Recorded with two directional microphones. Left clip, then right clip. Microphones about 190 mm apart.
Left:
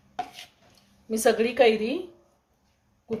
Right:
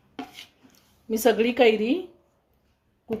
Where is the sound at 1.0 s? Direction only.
40° right (ahead or behind).